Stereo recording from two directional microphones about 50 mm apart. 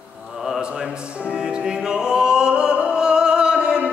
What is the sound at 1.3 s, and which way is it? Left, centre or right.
Music, centre.